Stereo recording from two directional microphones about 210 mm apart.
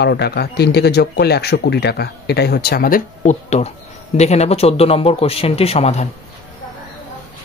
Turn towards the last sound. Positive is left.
turn(degrees=30)  # may be behind; listen again after turning